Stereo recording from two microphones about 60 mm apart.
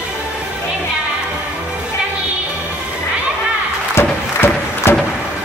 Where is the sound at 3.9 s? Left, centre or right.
Left.